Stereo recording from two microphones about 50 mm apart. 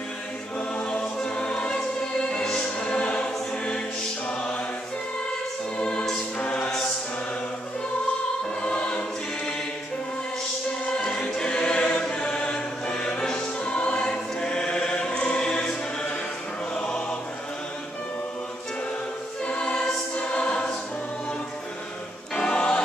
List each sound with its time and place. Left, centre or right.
0.7 s music: left
5.8 s music: centre
8.6 s choir: left
11.1 s choir: centre
12.9 s music: centre
16.7 s choir: centre
19.4 s choir: centre
22.3 s music: centre